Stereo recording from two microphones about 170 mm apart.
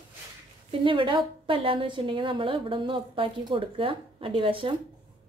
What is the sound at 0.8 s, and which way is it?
A woman's voice, 30° right (ahead or behind).